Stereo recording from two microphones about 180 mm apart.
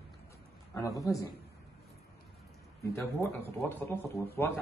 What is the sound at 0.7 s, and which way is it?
Speech, 20° left (ahead or behind).